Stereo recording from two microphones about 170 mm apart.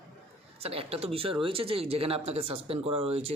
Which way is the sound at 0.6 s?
35° right (ahead or behind).